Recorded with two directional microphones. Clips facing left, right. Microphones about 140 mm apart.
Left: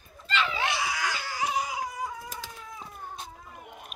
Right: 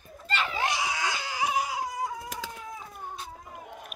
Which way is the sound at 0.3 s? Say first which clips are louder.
Left 1 dB; 45° right (ahead or behind).